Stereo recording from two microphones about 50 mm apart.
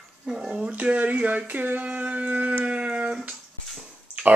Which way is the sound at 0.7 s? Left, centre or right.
Right.